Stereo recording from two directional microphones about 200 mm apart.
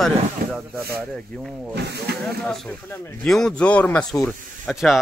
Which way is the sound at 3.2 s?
5° left (ahead or behind).